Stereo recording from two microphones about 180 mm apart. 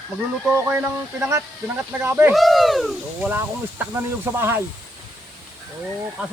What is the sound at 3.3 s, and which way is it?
Speech, 15° right (ahead or behind).